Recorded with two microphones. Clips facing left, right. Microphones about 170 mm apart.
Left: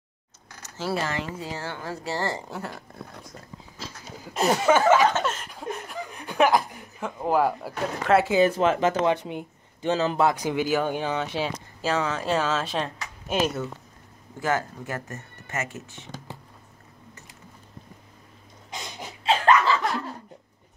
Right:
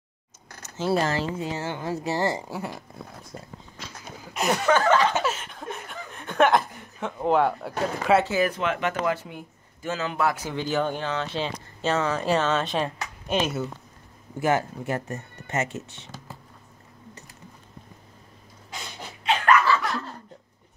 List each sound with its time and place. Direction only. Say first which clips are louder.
0.6 s a sound: right 4 dB; 20° right (ahead or behind)
0.9 s speech: right 5 dB; 35° right (ahead or behind)
1.4 s speech: right 4 dB; 20° right (ahead or behind)
4.6 s speech: left 1 dB; 10° left (ahead or behind)
5.1 s speech: right 1 dB; 5° right (ahead or behind)
8.3 s speech: left 4 dB; 25° left (ahead or behind)
9.1 s speech: left 4 dB; 20° left (ahead or behind)
10.1 s speech: left 3 dB; 15° left (ahead or behind); by 13.7 s centre (ahead or behind)
14.4 s speech: right 3 dB; 20° right (ahead or behind)
15.1 s music: right 4 dB; 20° right (ahead or behind)
15.7 s speech: right 3 dB; 15° left (ahead or behind)
19.2 s laughter: left 1 dB; 25° left (ahead or behind)